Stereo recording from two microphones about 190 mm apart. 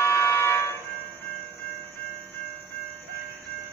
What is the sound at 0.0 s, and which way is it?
Buzzer, 15° left (ahead or behind).